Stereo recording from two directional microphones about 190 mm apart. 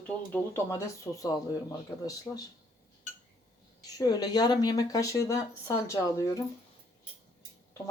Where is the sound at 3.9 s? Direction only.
20° left (ahead or behind).